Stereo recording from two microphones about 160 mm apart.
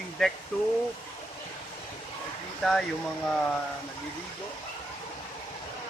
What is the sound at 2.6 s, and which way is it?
Speech, centre (ahead or behind).